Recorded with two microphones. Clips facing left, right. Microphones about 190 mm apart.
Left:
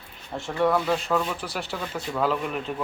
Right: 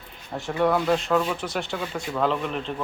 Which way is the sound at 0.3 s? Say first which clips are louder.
Right 1 dB; centre (ahead or behind).